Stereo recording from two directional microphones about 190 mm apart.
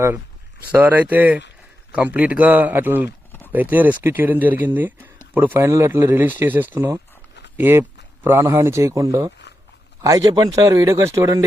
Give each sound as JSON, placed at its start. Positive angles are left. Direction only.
{"t": 0.7, "sound": "speech", "side_deg": -10}